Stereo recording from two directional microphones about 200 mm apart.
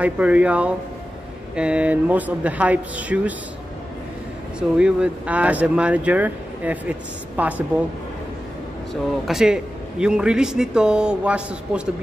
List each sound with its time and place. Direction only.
0.0 s speech: 5° right (ahead or behind)
4.6 s speech: 5° right (ahead or behind)
9.3 s a man's voice: 5° right (ahead or behind)